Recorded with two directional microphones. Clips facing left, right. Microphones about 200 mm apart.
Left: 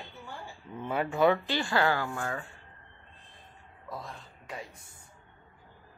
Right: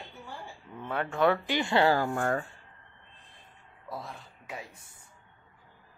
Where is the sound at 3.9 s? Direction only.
5° right (ahead or behind).